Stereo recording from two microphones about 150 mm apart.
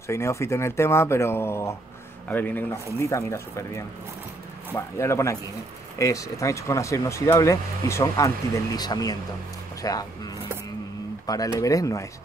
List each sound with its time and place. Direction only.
0.1 s speech: 20° left (ahead or behind)